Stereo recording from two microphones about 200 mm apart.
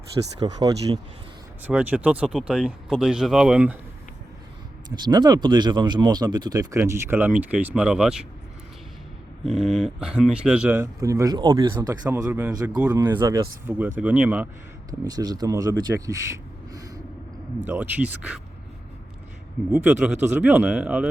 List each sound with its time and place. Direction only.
0.3 s speech: 20° right (ahead or behind)
1.6 s speech: 10° right (ahead or behind)
4.9 s speech: 20° right (ahead or behind); by 8.3 s 5° right (ahead or behind)
9.5 s speech: centre (ahead or behind)
13.0 s speech: 20° right (ahead or behind)
14.8 s speech: 20° right (ahead or behind)
19.8 s speech: 5° right (ahead or behind)